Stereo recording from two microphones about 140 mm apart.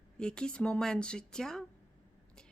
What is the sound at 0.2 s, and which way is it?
Speech, 5° left (ahead or behind).